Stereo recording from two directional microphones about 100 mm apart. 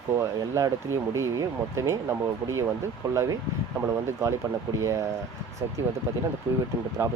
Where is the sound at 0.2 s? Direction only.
30° right (ahead or behind).